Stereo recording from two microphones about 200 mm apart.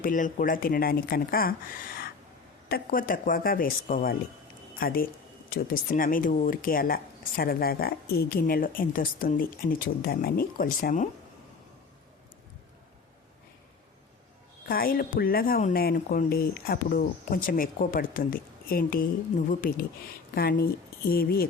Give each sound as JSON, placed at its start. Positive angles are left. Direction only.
{"t": 0.0, "sound": "speech", "side_deg": 40}
{"t": 14.7, "sound": "speech", "side_deg": 45}